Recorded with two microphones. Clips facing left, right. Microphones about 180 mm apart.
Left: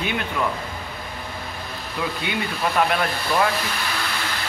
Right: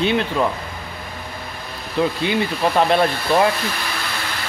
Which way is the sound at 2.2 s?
30° right (ahead or behind).